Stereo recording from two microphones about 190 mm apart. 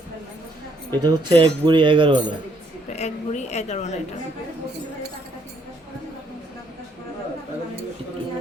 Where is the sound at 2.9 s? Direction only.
35° left (ahead or behind).